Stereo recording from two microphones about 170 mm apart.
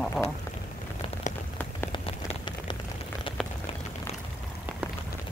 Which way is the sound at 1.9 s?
30° left (ahead or behind).